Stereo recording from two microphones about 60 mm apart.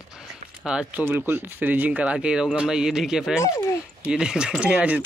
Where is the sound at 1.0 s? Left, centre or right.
Right.